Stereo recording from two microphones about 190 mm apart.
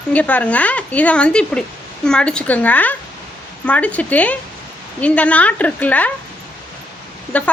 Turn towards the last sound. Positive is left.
turn(degrees=5)  # may be behind; listen again after turning